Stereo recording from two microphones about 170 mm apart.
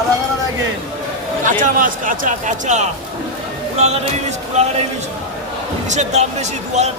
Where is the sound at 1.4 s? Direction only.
50° right (ahead or behind).